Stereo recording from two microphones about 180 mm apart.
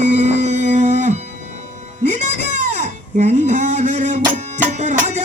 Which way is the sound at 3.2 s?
40° right (ahead or behind).